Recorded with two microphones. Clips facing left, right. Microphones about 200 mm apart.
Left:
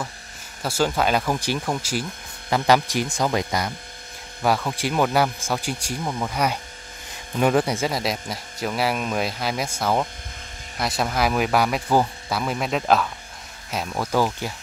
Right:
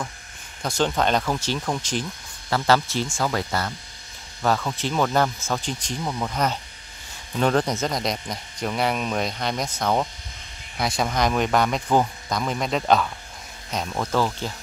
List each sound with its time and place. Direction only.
0.6 s speech: 5° left (ahead or behind)